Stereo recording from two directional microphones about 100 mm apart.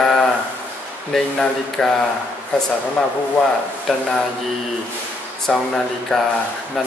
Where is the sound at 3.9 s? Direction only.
Centre (ahead or behind).